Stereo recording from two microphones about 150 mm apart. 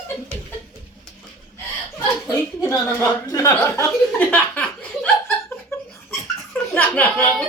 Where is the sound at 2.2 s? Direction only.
20° left (ahead or behind).